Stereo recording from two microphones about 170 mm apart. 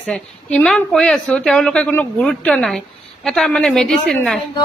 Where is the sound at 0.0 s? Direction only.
5° left (ahead or behind).